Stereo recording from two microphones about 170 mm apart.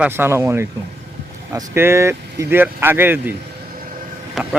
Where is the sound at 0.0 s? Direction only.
15° right (ahead or behind).